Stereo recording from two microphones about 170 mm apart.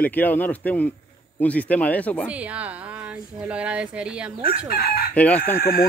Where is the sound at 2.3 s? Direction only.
10° right (ahead or behind).